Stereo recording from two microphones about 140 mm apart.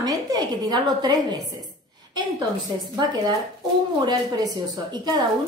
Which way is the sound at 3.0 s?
30° right (ahead or behind).